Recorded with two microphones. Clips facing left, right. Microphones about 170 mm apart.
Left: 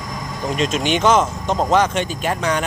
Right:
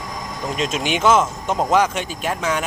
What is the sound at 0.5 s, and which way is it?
Speech, 5° right (ahead or behind).